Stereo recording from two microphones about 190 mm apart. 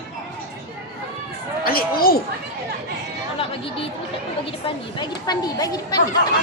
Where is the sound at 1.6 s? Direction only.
50° left (ahead or behind).